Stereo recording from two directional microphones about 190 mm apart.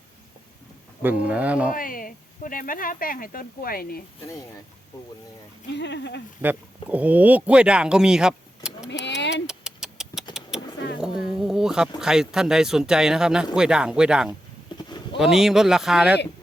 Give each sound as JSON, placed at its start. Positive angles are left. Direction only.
{"t": 1.0, "sound": "speech", "side_deg": -5}
{"t": 1.7, "sound": "speech", "side_deg": 50}
{"t": 5.7, "sound": "speech", "side_deg": 65}
{"t": 6.4, "sound": "speech", "side_deg": -10}
{"t": 8.9, "sound": "a sound", "side_deg": 65}
{"t": 9.3, "sound": "a sound", "side_deg": -5}
{"t": 11.9, "sound": "speech", "side_deg": -5}